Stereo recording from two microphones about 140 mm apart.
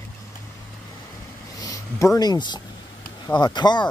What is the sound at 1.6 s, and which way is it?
Speech, 25° left (ahead or behind).